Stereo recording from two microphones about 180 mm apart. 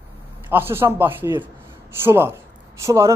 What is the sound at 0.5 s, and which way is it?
A man's voice, 10° right (ahead or behind).